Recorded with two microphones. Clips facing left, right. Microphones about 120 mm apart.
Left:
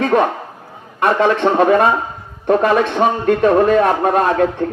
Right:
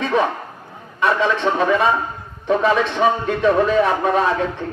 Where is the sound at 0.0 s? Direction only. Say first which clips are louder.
Left 4 dB; 50° left (ahead or behind).